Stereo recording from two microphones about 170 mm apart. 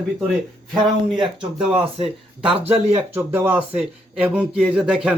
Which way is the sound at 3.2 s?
15° right (ahead or behind).